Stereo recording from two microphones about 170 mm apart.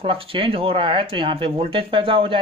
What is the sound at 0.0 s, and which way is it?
Speech, 30° right (ahead or behind).